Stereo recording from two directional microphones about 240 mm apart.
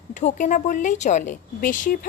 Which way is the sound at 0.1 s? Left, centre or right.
Left.